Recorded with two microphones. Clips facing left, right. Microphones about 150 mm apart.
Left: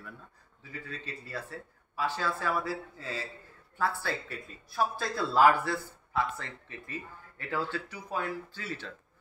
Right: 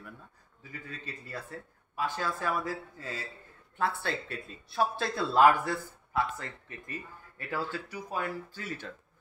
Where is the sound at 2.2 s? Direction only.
15° right (ahead or behind).